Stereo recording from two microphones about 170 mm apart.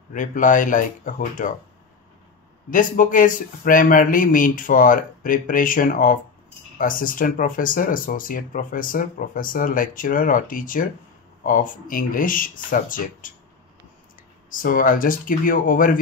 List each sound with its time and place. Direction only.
0.1 s speech: 50° left (ahead or behind)
2.7 s speech: 50° left (ahead or behind)
14.5 s speech: 55° left (ahead or behind)